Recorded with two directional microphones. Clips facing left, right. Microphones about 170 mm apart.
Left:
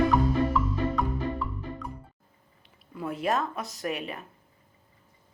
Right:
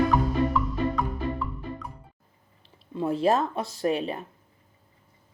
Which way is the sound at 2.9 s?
30° right (ahead or behind).